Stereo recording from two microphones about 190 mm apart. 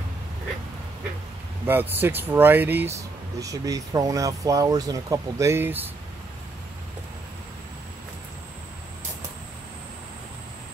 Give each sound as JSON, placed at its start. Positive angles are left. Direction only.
{"t": 1.7, "sound": "speech", "side_deg": -10}